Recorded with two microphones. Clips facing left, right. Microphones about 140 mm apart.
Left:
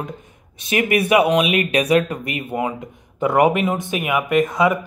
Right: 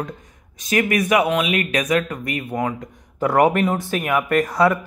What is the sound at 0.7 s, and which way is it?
Speech, 25° left (ahead or behind).